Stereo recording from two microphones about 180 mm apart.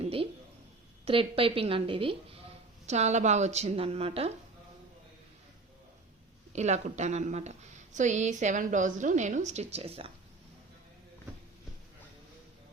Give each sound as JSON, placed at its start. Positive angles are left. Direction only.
{"t": 0.0, "sound": "a sound", "side_deg": -30}
{"t": 1.0, "sound": "a woman's voice", "side_deg": -30}
{"t": 6.5, "sound": "a woman's voice", "side_deg": -40}